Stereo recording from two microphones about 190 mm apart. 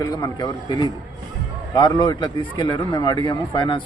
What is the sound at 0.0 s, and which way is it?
A man's voice, 20° left (ahead or behind).